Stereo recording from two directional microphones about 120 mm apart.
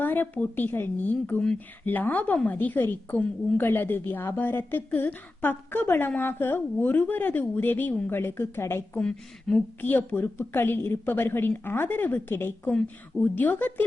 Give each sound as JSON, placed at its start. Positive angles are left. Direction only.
{"t": 0.0, "sound": "speech", "side_deg": 15}
{"t": 9.0, "sound": "speech", "side_deg": 5}